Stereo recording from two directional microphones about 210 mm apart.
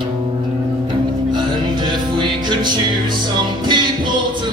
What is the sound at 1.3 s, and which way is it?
Music, 20° right (ahead or behind).